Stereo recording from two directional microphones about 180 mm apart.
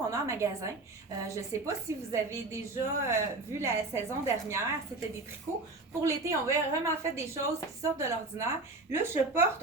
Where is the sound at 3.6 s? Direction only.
15° right (ahead or behind).